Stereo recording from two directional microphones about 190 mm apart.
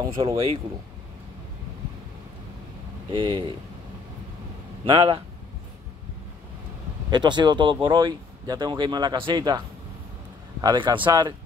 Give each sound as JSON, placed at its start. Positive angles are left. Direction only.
{"t": 0.2, "sound": "speech", "side_deg": -25}
{"t": 3.2, "sound": "speech", "side_deg": -25}
{"t": 4.8, "sound": "speech", "side_deg": -25}
{"t": 7.1, "sound": "speech", "side_deg": -25}
{"t": 10.6, "sound": "speech", "side_deg": -25}